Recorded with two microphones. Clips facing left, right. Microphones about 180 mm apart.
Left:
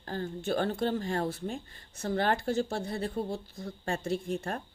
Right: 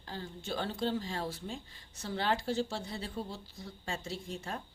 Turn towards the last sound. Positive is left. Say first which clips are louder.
# left 8 dB
turn(degrees=55)  # may be behind; listen again after turning